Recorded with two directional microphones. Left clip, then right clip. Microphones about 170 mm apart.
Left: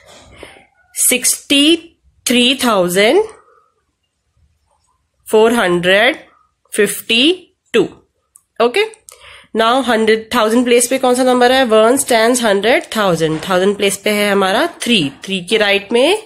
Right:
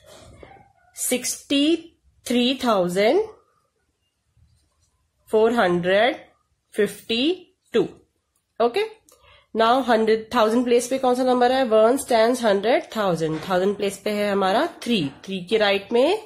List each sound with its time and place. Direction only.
1.0 s a woman's voice: 20° left (ahead or behind)
5.3 s speech: 20° left (ahead or behind)